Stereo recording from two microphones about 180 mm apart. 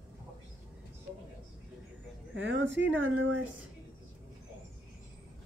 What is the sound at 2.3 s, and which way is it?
Speech, 90° right.